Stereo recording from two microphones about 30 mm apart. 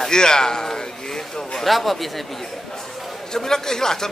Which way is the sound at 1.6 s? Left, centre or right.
Centre.